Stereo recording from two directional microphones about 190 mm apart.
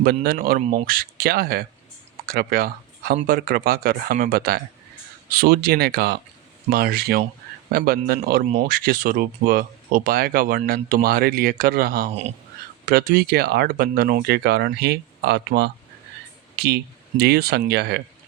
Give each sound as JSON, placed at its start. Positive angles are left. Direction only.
{"t": 0.0, "sound": "speech", "side_deg": -50}